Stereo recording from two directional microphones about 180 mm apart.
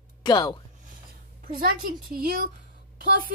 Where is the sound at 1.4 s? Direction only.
50° right (ahead or behind).